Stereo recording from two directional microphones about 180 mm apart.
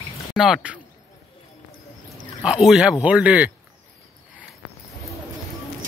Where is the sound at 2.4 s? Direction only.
5° right (ahead or behind).